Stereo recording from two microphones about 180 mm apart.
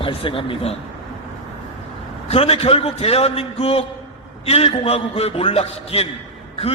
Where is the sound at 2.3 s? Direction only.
35° left (ahead or behind).